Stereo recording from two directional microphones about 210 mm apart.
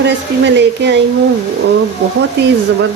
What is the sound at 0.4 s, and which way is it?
Speech, 55° right (ahead or behind).